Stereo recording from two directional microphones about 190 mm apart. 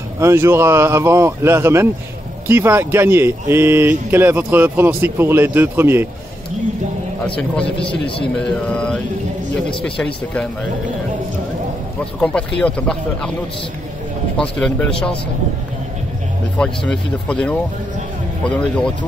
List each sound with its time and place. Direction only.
0.2 s speech: 15° right (ahead or behind)
7.2 s speech: 5° left (ahead or behind)
7.8 s a man's voice: 25° left (ahead or behind)
8.6 s speech: 5° left (ahead or behind)
12.2 s speech: 5° left (ahead or behind)
14.4 s speech: 5° left (ahead or behind)
16.5 s speech: 5° left (ahead or behind)